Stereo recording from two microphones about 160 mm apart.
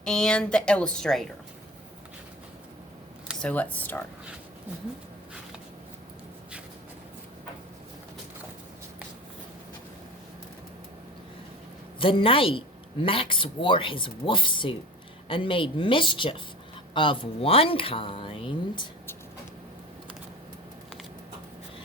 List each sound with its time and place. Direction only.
0.0 s speech: 5° left (ahead or behind)
3.4 s speech: 10° left (ahead or behind)
11.9 s speech: 35° left (ahead or behind)